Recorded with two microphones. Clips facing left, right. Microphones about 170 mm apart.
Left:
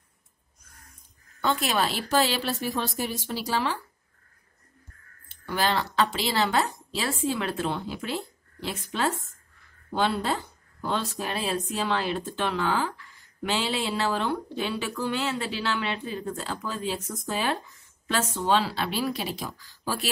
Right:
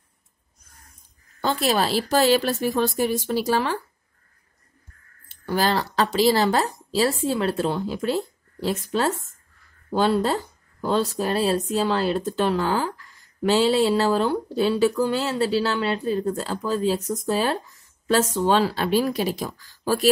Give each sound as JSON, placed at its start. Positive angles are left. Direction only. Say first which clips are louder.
{"t": 1.4, "sound": "a woman's voice", "louder": "right 4 dB", "side_deg": -35}
{"t": 5.5, "sound": "speech", "louder": "right 4 dB", "side_deg": -40}